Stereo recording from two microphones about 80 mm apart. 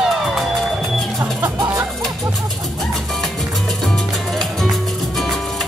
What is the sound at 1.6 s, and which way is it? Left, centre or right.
Music, right.